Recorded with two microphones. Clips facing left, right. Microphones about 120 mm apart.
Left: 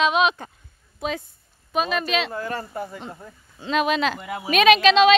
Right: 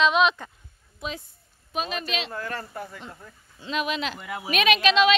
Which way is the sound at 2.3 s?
15° left (ahead or behind).